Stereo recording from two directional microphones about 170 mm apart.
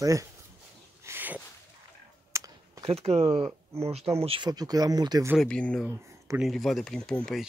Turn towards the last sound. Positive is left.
turn(degrees=0)  # may be behind; listen again after turning